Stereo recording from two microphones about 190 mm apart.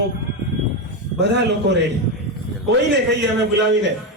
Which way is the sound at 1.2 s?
65° right (ahead or behind).